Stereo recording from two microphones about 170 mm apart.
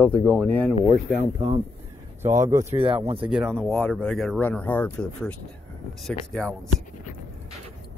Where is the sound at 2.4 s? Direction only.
20° right (ahead or behind).